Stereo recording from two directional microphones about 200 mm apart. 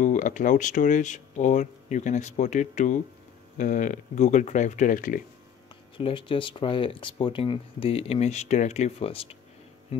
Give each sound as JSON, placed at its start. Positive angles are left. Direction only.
{"t": 0.0, "sound": "speech", "side_deg": 40}
{"t": 5.9, "sound": "speech", "side_deg": 25}